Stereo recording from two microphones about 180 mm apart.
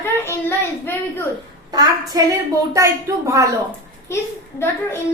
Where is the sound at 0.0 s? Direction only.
10° left (ahead or behind).